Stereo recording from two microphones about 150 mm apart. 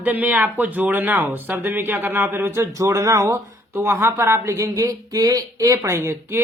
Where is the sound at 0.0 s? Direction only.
10° right (ahead or behind).